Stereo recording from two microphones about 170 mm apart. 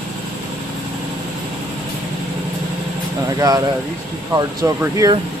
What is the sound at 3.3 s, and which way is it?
Speech, 20° right (ahead or behind).